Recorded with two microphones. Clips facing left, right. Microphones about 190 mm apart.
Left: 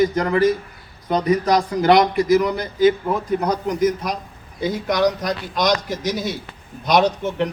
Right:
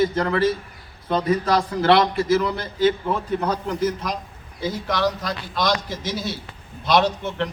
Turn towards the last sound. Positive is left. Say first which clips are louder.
# left 4 dB
turn(degrees=15)  # may be behind; listen again after turning